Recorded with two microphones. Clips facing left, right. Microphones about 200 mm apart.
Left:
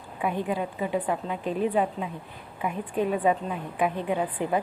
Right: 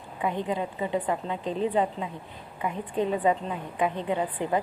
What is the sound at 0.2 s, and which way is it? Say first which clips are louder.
A woman's voice: left 1 dB; 10° left (ahead or behind).